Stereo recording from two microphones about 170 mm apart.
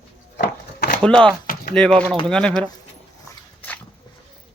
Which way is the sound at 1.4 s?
60° left (ahead or behind).